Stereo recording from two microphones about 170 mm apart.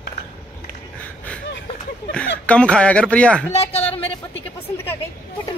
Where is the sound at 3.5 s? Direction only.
35° left (ahead or behind).